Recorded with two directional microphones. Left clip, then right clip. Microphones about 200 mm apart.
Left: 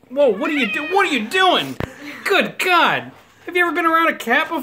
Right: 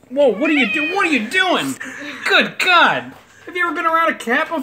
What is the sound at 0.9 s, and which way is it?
A woman's voice, 30° left (ahead or behind).